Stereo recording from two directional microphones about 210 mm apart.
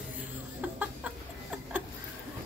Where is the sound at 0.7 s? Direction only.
5° right (ahead or behind).